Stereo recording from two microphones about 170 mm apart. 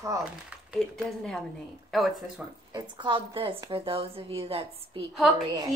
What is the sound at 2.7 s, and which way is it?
A woman's voice, 30° right (ahead or behind).